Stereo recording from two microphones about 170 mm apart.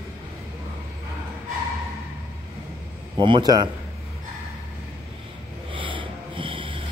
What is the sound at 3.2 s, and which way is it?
Speech, 25° right (ahead or behind).